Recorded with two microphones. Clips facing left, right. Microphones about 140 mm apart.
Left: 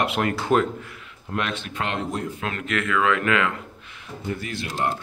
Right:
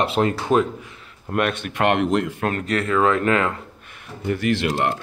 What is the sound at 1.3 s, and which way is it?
Speech, 55° right (ahead or behind).